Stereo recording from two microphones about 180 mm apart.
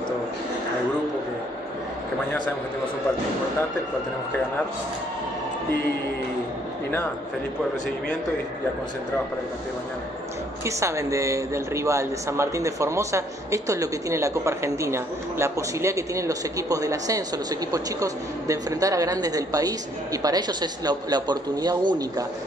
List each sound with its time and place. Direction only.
10.6 s speech: 15° right (ahead or behind)